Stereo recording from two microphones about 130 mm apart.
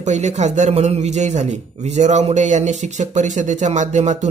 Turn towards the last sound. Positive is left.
turn(degrees=-65)  # may be behind; listen again after turning